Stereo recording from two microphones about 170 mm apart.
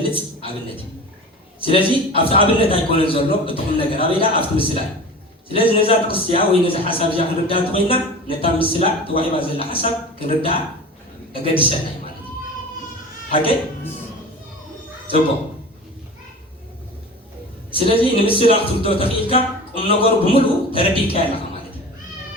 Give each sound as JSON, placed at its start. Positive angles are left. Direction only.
{"t": 0.0, "sound": "a sound", "side_deg": 30}
{"t": 1.6, "sound": "a man's voice", "side_deg": 35}
{"t": 17.7, "sound": "a man's voice", "side_deg": 35}